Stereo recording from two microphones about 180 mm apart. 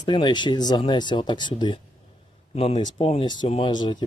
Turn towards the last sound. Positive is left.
turn(degrees=25)  # may be behind; listen again after turning